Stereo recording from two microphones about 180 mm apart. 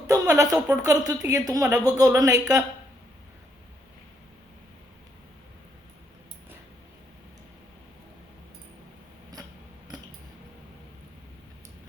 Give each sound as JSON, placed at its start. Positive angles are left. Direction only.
{"t": 0.1, "sound": "a woman's voice", "side_deg": -20}